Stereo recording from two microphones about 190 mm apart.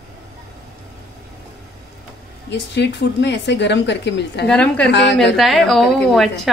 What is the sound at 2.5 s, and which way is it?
Speech, 65° left (ahead or behind).